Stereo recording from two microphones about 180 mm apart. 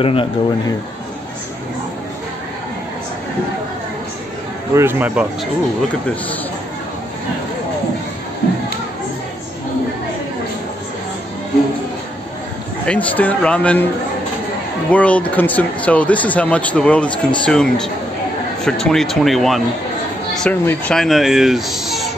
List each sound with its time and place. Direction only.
0.0 s speech: 30° left (ahead or behind)
4.7 s speech: 10° right (ahead or behind)
12.8 s speech: 5° left (ahead or behind)
14.9 s speech: 5° left (ahead or behind)